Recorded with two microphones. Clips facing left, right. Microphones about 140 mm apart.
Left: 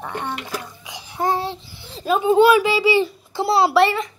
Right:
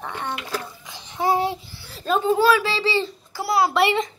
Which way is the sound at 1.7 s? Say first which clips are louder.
Left 4 dB; 25° left (ahead or behind).